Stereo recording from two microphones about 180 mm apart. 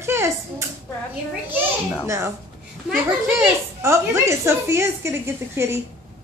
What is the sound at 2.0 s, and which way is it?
Speech, 15° right (ahead or behind).